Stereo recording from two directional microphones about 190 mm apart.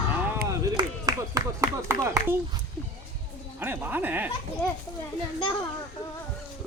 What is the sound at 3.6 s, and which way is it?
Speech, 10° right (ahead or behind).